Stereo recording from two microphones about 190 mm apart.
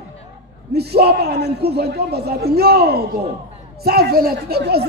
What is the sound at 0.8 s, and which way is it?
A woman's voice, 55° right (ahead or behind).